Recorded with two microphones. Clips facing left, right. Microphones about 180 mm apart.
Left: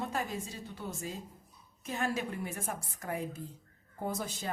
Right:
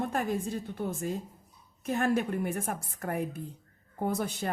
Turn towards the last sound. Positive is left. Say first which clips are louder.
# right 5 dB
turn(degrees=-60)  # may be behind; listen again after turning